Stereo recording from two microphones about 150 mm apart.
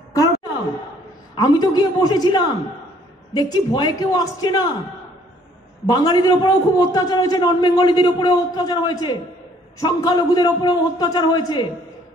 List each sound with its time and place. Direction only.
1.3 s a man's voice: 30° left (ahead or behind)
5.9 s a man's voice: 30° left (ahead or behind)